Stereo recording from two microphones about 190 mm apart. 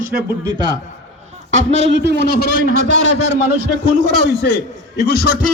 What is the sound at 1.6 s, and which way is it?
A man's voice, 65° right (ahead or behind).